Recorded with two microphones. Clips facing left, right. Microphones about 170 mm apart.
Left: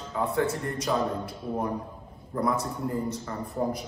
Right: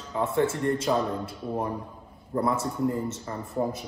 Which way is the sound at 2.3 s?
30° right (ahead or behind).